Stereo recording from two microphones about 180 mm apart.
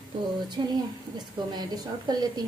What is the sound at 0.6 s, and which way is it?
A woman's voice, 25° right (ahead or behind).